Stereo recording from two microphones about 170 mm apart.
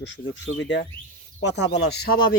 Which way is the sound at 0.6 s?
90° left.